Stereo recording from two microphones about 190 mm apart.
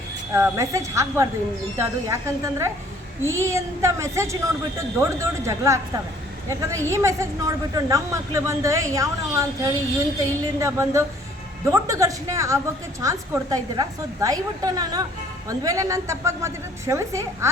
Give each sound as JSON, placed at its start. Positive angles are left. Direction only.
{"t": 0.3, "sound": "a woman's voice", "side_deg": -15}